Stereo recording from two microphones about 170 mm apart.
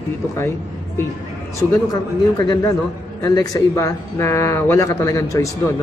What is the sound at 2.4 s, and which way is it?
Speech, 25° left (ahead or behind).